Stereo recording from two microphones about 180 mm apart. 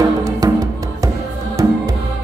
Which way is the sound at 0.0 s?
20° right (ahead or behind).